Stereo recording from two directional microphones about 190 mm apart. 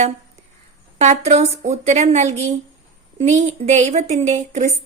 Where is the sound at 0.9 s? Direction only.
35° right (ahead or behind).